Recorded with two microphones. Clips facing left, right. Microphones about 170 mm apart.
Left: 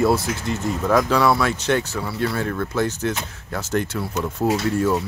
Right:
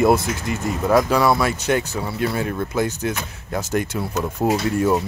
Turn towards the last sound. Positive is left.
turn(degrees=-15)  # may be behind; listen again after turning